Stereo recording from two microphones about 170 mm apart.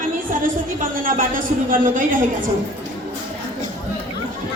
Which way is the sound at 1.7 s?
55° right (ahead or behind).